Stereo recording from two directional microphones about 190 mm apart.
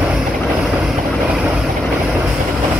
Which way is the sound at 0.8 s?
Centre (ahead or behind).